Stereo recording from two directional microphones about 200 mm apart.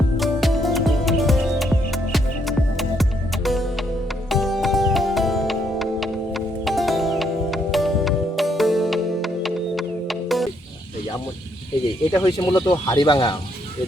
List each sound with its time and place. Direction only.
0.2 s music: centre (ahead or behind)
12.1 s speech: 20° left (ahead or behind)